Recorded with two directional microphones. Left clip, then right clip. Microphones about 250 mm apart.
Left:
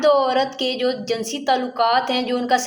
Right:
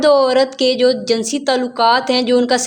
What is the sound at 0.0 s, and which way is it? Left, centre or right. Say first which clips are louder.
A woman's voice: right 5 dB; right.